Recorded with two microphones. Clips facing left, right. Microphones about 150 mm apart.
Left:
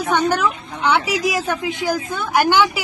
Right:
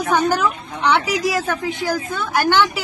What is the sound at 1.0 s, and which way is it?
Speech, 25° left (ahead or behind).